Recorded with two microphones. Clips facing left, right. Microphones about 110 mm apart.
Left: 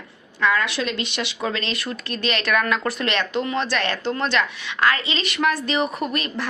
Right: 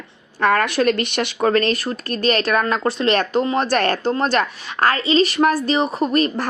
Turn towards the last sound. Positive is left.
turn(degrees=-40)  # may be behind; listen again after turning